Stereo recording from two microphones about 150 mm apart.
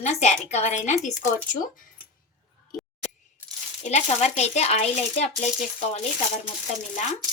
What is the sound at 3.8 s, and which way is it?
Speech, 50° left (ahead or behind).